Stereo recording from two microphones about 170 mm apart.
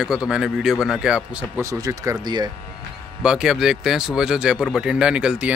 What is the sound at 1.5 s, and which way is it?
Speech, 20° right (ahead or behind).